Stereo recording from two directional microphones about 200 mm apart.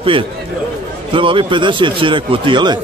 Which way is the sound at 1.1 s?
25° right (ahead or behind).